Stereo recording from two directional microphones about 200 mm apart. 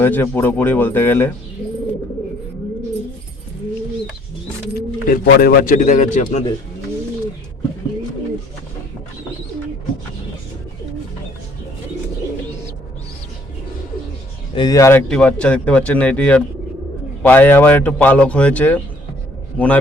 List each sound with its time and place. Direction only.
0.0 s a man's voice: 10° left (ahead or behind)
4.7 s speech: 45° left (ahead or behind)
14.5 s a man's voice: 20° left (ahead or behind)
15.0 s a man's voice: 5° left (ahead or behind)